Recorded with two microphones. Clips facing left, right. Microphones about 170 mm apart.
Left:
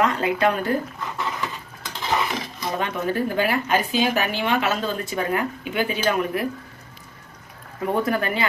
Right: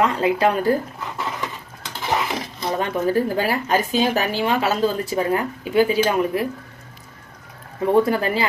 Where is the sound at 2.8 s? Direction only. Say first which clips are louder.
Right 4 dB; 35° right (ahead or behind).